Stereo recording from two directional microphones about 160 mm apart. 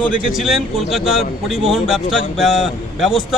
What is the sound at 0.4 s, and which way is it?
A man's voice, centre (ahead or behind).